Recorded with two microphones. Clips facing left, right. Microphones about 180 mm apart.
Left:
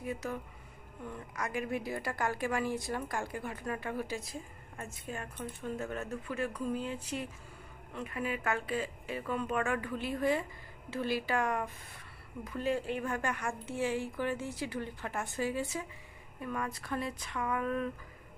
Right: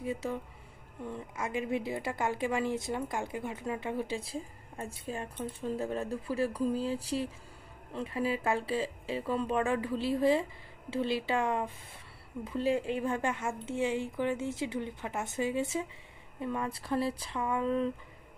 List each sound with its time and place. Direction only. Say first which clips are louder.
0.0 s speech: right 3 dB; 25° right (ahead or behind)
12.7 s speech: right 3 dB; 20° right (ahead or behind)